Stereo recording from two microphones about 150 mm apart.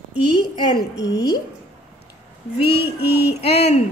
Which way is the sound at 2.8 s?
90° left.